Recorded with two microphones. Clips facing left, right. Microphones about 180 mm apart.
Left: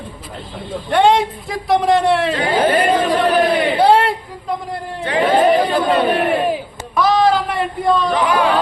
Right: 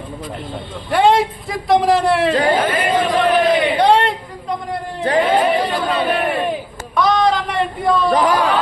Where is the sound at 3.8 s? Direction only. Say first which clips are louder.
Left 4 dB; 5° left (ahead or behind).